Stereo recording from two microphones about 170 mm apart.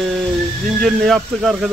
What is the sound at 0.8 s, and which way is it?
Speech, centre (ahead or behind).